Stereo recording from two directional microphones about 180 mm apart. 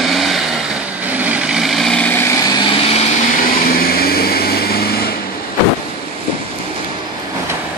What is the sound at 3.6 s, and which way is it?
Vehicle, 55° left (ahead or behind).